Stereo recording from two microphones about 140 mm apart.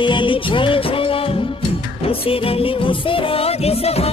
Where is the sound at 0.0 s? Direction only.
35° left (ahead or behind).